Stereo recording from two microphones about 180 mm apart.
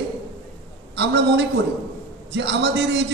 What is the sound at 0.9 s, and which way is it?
A man's voice, 75° right (ahead or behind).